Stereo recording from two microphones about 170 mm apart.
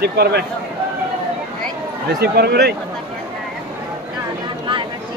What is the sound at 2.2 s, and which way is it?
Speech, 75° right (ahead or behind).